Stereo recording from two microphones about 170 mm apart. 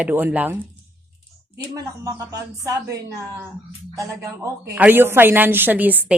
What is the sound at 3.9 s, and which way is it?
A woman's voice, 20° right (ahead or behind).